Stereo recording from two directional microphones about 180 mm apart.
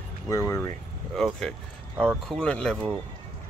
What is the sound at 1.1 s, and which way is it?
Speech, centre (ahead or behind).